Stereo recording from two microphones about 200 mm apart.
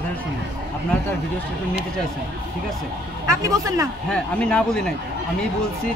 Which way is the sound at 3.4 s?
15° right (ahead or behind).